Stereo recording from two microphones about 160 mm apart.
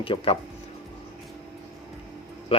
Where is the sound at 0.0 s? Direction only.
35° left (ahead or behind).